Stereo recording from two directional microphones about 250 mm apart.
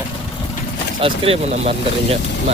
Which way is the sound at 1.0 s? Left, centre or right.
Right.